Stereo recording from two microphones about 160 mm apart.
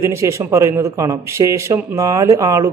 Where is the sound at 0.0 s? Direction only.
20° right (ahead or behind).